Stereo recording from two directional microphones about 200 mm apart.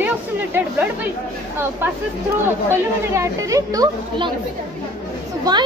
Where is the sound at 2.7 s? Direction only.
15° right (ahead or behind).